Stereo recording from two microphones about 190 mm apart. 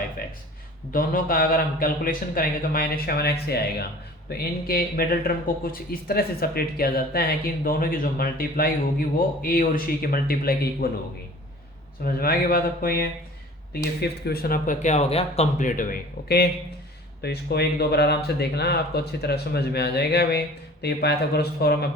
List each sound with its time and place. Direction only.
0.9 s speech: 50° left (ahead or behind)
12.0 s speech: 50° left (ahead or behind)